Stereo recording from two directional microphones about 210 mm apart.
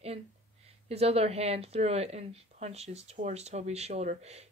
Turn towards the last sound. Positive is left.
turn(degrees=-30)  # may be behind; listen again after turning